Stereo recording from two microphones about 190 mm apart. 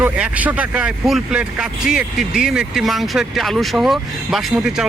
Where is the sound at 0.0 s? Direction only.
10° right (ahead or behind).